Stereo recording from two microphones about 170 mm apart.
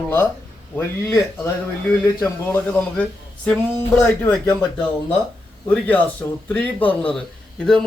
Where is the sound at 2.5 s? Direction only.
10° left (ahead or behind).